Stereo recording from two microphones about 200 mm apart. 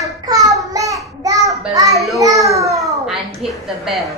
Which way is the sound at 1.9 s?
Centre (ahead or behind).